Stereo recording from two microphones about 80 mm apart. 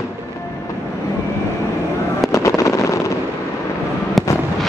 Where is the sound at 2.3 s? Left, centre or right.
Left.